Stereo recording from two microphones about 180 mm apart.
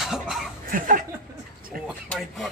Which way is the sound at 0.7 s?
50° right (ahead or behind).